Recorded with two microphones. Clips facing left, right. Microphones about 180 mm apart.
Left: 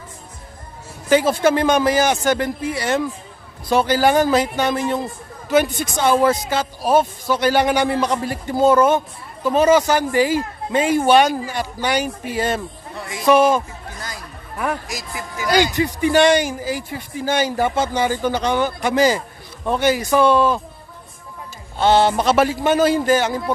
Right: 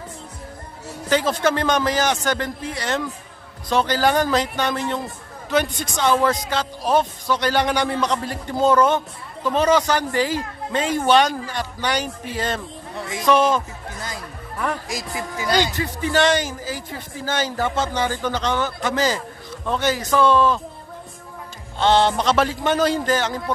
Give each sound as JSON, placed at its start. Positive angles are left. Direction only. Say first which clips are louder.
{"t": 1.0, "sound": "speech", "louder": "left 4 dB", "side_deg": 10}
{"t": 14.9, "sound": "speech", "louder": "right 2 dB", "side_deg": -25}
{"t": 15.5, "sound": "speech", "louder": "left 4 dB", "side_deg": 15}
{"t": 21.7, "sound": "speech", "louder": "left 2 dB", "side_deg": 10}